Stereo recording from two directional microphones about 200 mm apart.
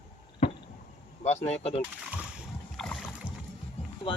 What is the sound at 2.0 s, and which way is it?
Boat, 5° right (ahead or behind).